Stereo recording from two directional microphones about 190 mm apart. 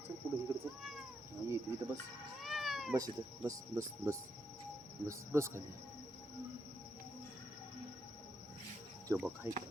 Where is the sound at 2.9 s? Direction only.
15° right (ahead or behind).